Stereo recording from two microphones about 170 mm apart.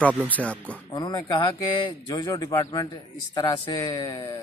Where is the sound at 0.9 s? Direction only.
25° left (ahead or behind).